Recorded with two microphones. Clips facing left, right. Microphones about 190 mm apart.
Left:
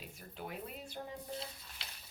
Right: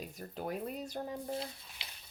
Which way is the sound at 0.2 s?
45° right (ahead or behind).